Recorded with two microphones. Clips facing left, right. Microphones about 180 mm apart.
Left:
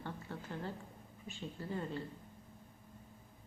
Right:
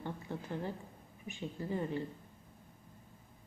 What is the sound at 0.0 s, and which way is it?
A woman's voice, 15° right (ahead or behind).